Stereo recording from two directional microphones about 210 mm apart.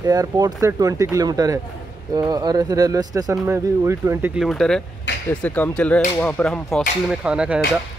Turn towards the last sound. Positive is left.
turn(degrees=-5)  # may be behind; listen again after turning